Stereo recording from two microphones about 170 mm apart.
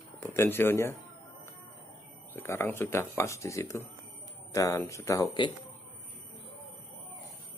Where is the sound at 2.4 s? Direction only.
15° left (ahead or behind).